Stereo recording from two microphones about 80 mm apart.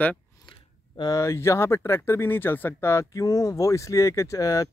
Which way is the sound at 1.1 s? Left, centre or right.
Left.